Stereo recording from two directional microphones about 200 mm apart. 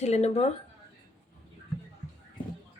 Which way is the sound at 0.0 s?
35° left (ahead or behind).